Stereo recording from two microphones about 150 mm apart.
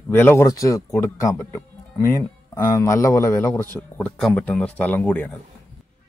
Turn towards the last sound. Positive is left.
turn(degrees=10)  # may be behind; listen again after turning